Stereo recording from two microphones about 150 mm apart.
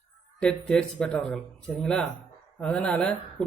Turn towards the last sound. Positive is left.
turn(degrees=5)  # may be behind; listen again after turning